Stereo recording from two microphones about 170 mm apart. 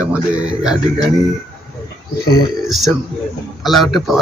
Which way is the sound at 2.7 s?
Centre (ahead or behind).